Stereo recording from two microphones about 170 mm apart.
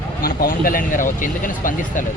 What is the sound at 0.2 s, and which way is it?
Speech, 55° left (ahead or behind).